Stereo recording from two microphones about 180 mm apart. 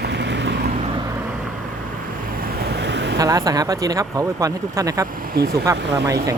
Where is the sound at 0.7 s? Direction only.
35° right (ahead or behind).